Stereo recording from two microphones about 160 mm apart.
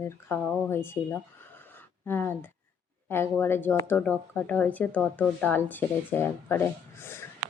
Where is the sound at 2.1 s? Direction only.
15° left (ahead or behind).